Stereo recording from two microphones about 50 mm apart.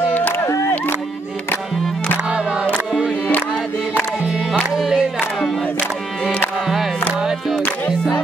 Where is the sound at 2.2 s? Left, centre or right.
Right.